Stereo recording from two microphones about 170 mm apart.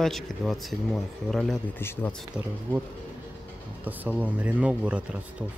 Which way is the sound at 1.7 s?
10° left (ahead or behind).